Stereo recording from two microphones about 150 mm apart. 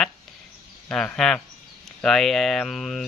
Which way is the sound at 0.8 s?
5° left (ahead or behind).